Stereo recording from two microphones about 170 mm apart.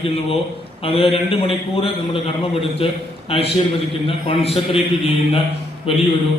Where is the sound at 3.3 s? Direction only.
35° left (ahead or behind).